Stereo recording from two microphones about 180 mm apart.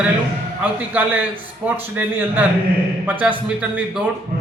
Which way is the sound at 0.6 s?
10° right (ahead or behind).